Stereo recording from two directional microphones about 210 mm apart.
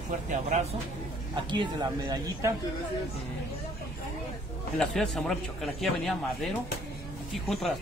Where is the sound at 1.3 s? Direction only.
20° right (ahead or behind).